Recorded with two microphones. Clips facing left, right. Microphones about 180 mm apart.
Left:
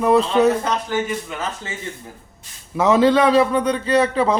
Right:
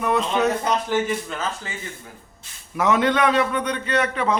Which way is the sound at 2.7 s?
30° left (ahead or behind).